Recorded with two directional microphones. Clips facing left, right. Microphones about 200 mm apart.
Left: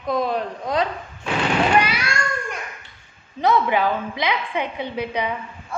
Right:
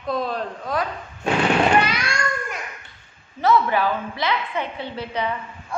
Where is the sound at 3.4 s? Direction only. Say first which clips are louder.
Even; 15° left (ahead or behind).